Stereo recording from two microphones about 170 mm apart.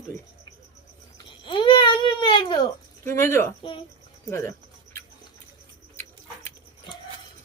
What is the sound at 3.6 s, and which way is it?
Speech, 30° left (ahead or behind).